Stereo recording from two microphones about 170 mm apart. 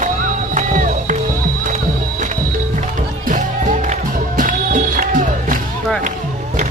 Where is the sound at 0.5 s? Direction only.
45° right (ahead or behind).